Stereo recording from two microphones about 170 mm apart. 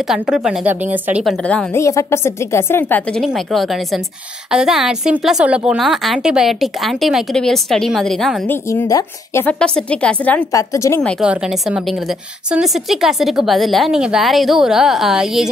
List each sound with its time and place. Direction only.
0.1 s a woman's voice: 5° right (ahead or behind)
1.7 s a woman's voice: 15° left (ahead or behind)
3.2 s a woman's voice: centre (ahead or behind)
8.6 s a woman's voice: 20° left (ahead or behind)
11.0 s a woman's voice: 5° left (ahead or behind)